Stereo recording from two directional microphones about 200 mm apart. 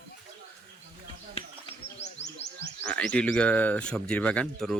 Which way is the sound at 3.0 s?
5° left (ahead or behind).